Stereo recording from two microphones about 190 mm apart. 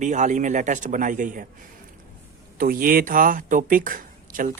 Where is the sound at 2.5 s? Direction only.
50° right (ahead or behind).